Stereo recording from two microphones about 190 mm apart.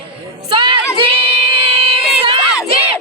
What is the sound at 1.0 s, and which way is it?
Singing, 30° right (ahead or behind).